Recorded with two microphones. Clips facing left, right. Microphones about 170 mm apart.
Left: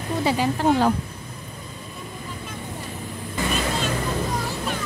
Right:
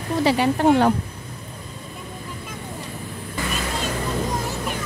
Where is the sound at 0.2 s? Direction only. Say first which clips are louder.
Right 4 dB; 75° right (ahead or behind).